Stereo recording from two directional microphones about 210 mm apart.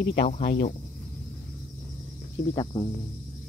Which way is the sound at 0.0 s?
50° left (ahead or behind).